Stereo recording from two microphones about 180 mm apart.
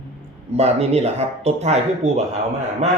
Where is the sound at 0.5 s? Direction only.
35° right (ahead or behind).